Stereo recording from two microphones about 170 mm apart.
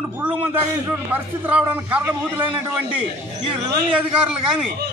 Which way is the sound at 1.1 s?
10° right (ahead or behind).